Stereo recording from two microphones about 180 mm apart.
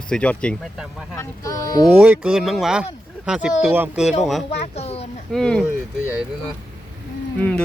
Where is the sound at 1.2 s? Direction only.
20° left (ahead or behind).